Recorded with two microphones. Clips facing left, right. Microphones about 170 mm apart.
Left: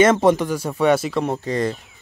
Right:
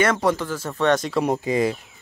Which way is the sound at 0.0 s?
20° left (ahead or behind).